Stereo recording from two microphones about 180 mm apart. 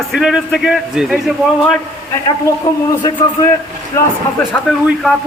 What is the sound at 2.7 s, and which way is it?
Speech, 20° left (ahead or behind).